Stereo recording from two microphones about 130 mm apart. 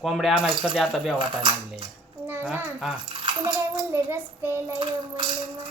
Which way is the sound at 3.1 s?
40° right (ahead or behind).